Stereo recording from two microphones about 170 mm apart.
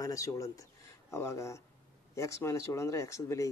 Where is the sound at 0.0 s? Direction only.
20° left (ahead or behind).